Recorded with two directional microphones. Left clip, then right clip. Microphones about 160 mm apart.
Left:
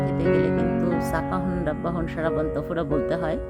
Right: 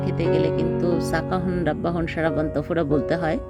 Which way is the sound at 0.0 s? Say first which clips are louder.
Right 1 dB; 25° right (ahead or behind).